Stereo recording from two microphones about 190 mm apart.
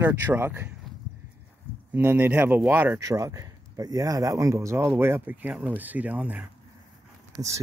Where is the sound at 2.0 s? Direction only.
10° right (ahead or behind).